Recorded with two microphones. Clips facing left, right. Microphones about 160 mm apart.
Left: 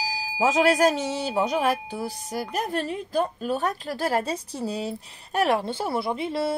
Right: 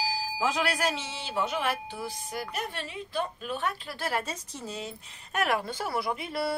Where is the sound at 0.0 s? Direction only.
40° left (ahead or behind).